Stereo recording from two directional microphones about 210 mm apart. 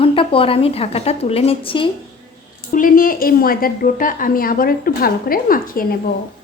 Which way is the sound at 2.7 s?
40° left (ahead or behind).